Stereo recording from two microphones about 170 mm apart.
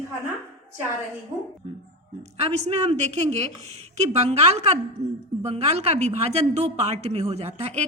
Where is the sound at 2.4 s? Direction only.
35° right (ahead or behind).